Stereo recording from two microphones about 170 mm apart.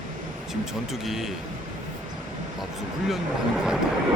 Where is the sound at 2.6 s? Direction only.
Centre (ahead or behind).